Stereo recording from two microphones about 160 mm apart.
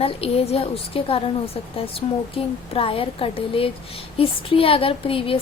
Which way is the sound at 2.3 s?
35° left (ahead or behind).